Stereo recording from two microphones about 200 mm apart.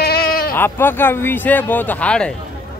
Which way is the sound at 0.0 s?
50° left (ahead or behind).